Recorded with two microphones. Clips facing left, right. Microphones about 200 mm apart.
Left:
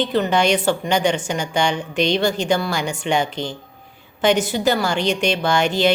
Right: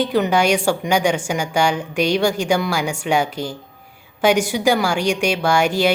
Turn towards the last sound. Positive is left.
turn(degrees=-10)  # may be behind; listen again after turning